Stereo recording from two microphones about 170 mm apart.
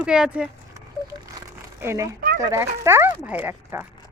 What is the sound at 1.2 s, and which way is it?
Crumpling, 15° right (ahead or behind).